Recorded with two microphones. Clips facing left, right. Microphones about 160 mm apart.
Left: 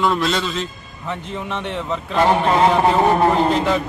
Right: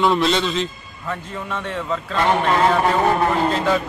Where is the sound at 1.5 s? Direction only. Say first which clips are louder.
Even; 20° left (ahead or behind).